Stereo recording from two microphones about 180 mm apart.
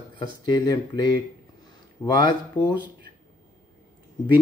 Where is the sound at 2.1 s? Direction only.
25° left (ahead or behind).